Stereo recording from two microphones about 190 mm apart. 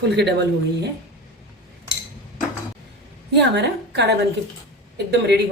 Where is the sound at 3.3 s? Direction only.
65° right (ahead or behind).